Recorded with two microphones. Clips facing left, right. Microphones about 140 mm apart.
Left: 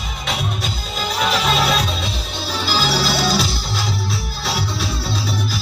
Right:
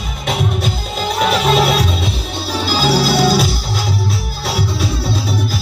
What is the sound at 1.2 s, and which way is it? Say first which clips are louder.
Music: right 5 dB; 55° right (ahead or behind).